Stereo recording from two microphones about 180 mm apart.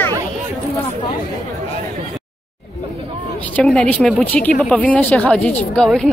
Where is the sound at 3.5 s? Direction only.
5° left (ahead or behind).